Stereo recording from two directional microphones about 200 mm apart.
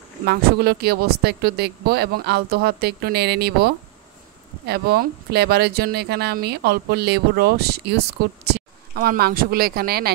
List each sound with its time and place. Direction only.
0.3 s speech: 55° right (ahead or behind)